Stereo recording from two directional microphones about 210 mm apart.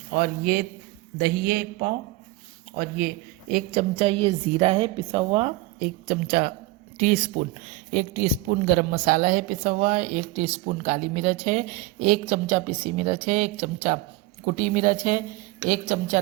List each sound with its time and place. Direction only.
0.1 s a man's voice: 45° right (ahead or behind)
3.5 s a woman's voice: 30° right (ahead or behind)
5.8 s a woman's voice: 40° right (ahead or behind)